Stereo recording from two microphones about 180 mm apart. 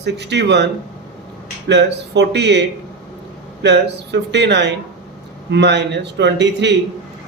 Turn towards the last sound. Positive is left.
turn(degrees=-75)  # may be behind; listen again after turning